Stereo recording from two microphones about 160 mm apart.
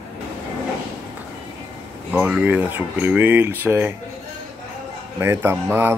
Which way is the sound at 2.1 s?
5° right (ahead or behind).